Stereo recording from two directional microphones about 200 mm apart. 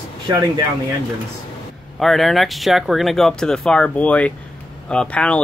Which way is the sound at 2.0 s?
Centre (ahead or behind).